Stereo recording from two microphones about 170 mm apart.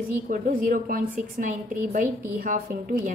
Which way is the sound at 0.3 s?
55° right (ahead or behind).